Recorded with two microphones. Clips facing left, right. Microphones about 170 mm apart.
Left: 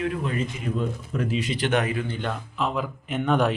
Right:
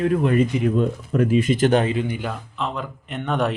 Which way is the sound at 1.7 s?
25° right (ahead or behind).